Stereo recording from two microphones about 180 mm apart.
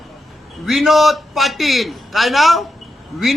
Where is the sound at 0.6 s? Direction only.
Centre (ahead or behind).